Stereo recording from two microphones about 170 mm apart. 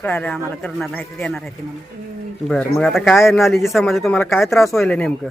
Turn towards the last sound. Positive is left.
turn(degrees=5)  # may be behind; listen again after turning